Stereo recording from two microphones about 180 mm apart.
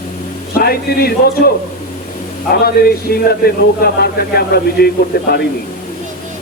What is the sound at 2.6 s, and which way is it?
Speech, 55° left (ahead or behind).